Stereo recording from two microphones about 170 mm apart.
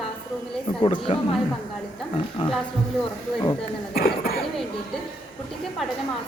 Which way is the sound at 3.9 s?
60° left (ahead or behind).